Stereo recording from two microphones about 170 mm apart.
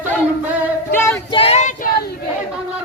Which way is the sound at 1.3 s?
35° left (ahead or behind).